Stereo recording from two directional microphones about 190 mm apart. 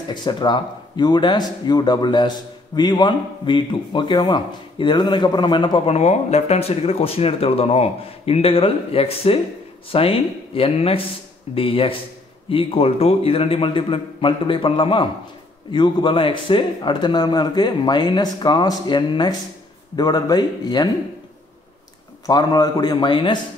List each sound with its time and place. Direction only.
0.1 s speech: 25° left (ahead or behind)
22.2 s speech: 20° left (ahead or behind)